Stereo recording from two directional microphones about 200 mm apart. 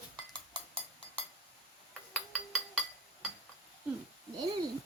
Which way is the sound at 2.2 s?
Centre (ahead or behind).